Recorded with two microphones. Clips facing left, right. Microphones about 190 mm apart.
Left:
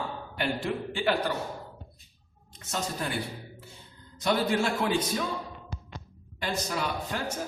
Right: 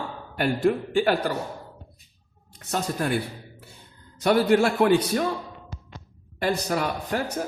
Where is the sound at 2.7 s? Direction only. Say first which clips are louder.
Right 6 dB; 55° right (ahead or behind).